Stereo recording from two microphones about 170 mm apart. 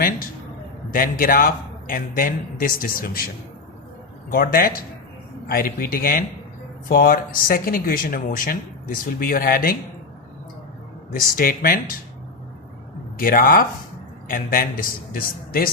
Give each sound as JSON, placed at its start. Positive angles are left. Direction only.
{"t": 1.2, "sound": "speech", "side_deg": 55}
{"t": 4.3, "sound": "speech", "side_deg": 60}
{"t": 11.1, "sound": "speech", "side_deg": 55}
{"t": 13.1, "sound": "speech", "side_deg": 55}